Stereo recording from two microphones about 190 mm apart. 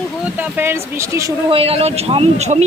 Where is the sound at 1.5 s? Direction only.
30° right (ahead or behind).